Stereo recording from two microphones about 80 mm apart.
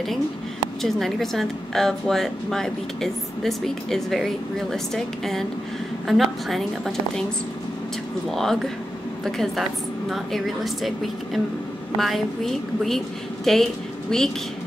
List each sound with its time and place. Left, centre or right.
0.8 s a woman's voice: centre
8.3 s speech: centre